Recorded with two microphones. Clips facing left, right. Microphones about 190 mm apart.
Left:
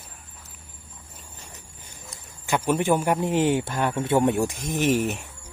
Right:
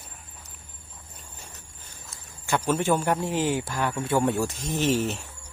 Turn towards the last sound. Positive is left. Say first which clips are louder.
# left 2 dB
turn(degrees=15)  # may be behind; listen again after turning